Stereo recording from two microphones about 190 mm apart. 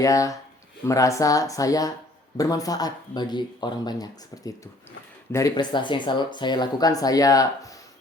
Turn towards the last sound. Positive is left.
turn(degrees=20)  # may be behind; listen again after turning